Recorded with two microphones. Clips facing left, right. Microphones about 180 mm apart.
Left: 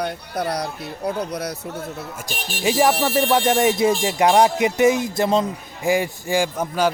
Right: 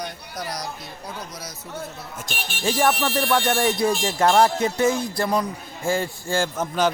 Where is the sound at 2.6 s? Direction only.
20° left (ahead or behind).